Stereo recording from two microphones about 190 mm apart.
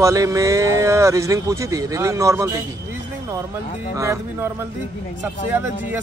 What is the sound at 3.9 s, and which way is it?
Speech, 15° right (ahead or behind).